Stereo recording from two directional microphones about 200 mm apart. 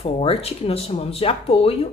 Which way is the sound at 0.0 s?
30° left (ahead or behind).